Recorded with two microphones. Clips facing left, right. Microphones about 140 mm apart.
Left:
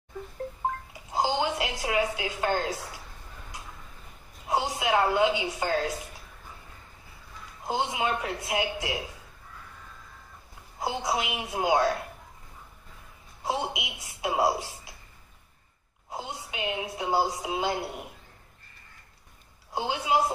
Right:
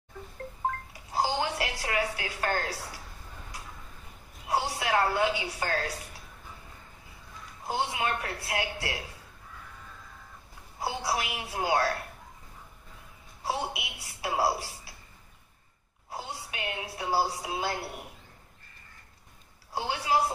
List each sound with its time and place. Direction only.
1.1 s a woman's voice: 20° left (ahead or behind)
4.5 s a woman's voice: 20° left (ahead or behind)
7.6 s a woman's voice: 20° left (ahead or behind)
10.8 s a woman's voice: 20° left (ahead or behind)
13.4 s a woman's voice: 20° left (ahead or behind)
16.1 s a woman's voice: 20° left (ahead or behind)
19.7 s a woman's voice: 20° left (ahead or behind)